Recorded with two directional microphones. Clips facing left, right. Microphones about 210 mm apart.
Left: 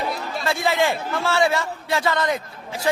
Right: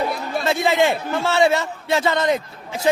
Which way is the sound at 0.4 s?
20° right (ahead or behind).